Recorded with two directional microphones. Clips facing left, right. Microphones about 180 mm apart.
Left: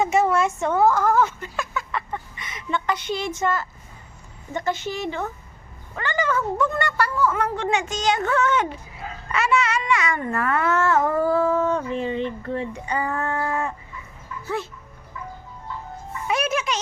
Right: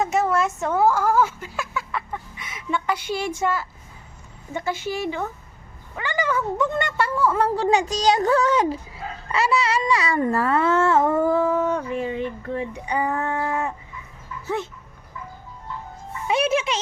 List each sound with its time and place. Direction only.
0.0 s a woman's voice: centre (ahead or behind); by 13.7 s 15° right (ahead or behind)
14.4 s dog: 20° right (ahead or behind)
16.2 s speech: 30° right (ahead or behind)